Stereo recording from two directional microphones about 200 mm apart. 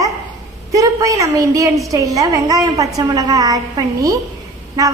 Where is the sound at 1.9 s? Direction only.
15° right (ahead or behind).